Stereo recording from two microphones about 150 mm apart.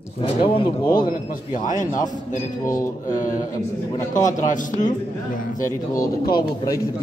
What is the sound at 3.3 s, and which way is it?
Speech, 25° left (ahead or behind).